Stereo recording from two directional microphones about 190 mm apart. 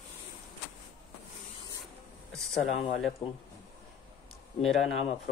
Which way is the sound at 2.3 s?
Centre (ahead or behind).